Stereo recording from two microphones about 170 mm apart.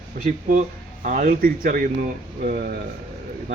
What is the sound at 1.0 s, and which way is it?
Speech, 50° right (ahead or behind).